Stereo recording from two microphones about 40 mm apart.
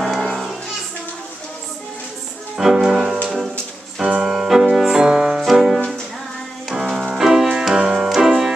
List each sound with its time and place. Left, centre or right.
0.1 s music: centre
2.5 s music: centre